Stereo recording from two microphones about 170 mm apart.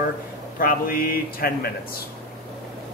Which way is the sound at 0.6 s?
55° left (ahead or behind).